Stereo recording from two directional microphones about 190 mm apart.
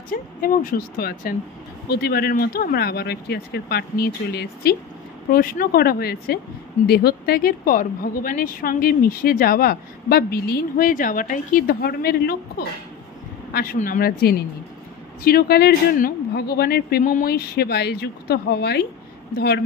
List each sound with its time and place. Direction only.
0.1 s a woman's voice: 50° left (ahead or behind)